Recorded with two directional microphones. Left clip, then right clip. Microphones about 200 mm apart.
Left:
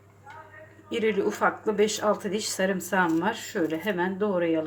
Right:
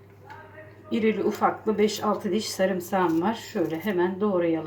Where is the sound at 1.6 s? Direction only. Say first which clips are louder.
Even; 55° left (ahead or behind).